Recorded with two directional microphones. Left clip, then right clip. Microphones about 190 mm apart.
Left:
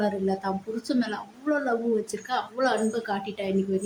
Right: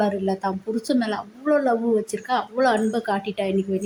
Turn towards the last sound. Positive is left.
turn(degrees=-15)  # may be behind; listen again after turning